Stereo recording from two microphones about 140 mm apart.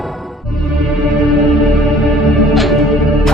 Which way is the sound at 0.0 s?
Centre (ahead or behind).